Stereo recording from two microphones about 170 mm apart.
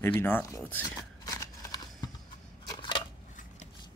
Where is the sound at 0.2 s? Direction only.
15° left (ahead or behind).